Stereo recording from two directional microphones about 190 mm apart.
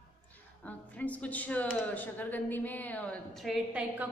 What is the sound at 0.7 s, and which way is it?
Speech, 10° left (ahead or behind).